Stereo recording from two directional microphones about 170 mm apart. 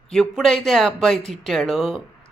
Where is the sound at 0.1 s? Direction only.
Centre (ahead or behind).